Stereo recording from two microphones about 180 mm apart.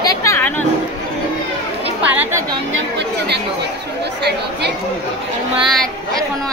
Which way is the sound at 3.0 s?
70° right (ahead or behind).